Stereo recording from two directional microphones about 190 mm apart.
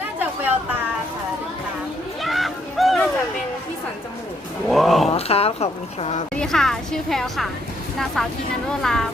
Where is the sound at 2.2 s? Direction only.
Centre (ahead or behind).